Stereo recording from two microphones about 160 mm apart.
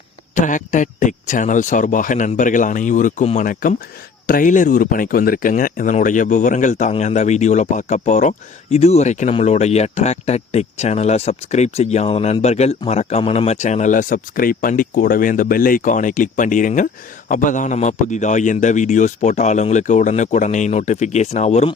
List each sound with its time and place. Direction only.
0.3 s speech: 50° left (ahead or behind)